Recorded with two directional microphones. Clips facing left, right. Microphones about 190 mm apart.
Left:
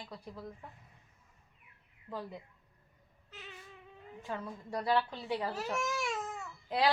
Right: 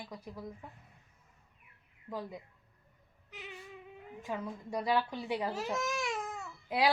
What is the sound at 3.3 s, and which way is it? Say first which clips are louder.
A child's voice: right 4 dB; 15° right (ahead or behind).